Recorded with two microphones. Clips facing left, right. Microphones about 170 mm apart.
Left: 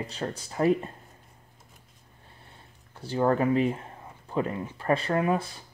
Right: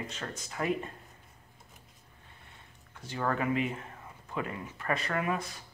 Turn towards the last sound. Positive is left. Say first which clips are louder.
# left 6 dB
turn(degrees=30)  # may be behind; listen again after turning